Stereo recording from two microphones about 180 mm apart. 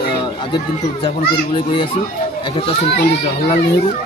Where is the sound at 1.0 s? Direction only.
25° left (ahead or behind).